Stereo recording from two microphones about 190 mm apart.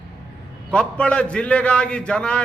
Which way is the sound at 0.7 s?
5° left (ahead or behind).